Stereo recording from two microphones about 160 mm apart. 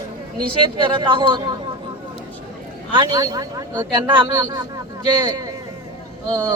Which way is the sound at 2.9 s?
25° right (ahead or behind).